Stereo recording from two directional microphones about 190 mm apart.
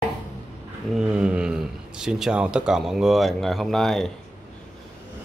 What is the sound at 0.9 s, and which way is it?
Speech, 5° right (ahead or behind).